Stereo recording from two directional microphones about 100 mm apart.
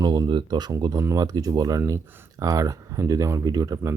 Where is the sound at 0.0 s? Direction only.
45° right (ahead or behind).